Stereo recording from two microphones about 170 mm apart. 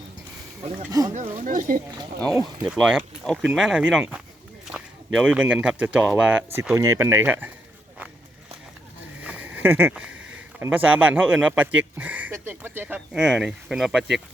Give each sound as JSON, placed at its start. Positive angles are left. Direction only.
{"t": 0.9, "sound": "speech", "side_deg": -20}
{"t": 1.1, "sound": "speech", "side_deg": -45}
{"t": 2.2, "sound": "speech", "side_deg": 0}
{"t": 9.2, "sound": "speech", "side_deg": -10}